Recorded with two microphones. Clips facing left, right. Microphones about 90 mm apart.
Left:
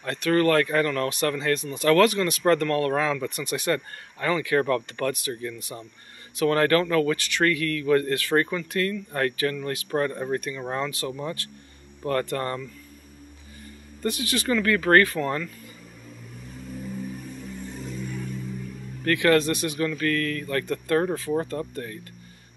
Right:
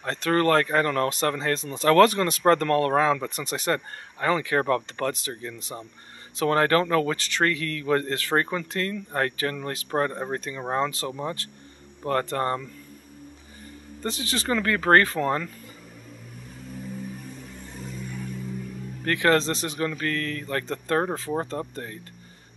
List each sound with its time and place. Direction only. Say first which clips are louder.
0.0 s speech: left 1 dB; 30° right (ahead or behind)
14.0 s speech: left 2 dB; 30° right (ahead or behind)
19.0 s speech: left 1 dB; 25° right (ahead or behind)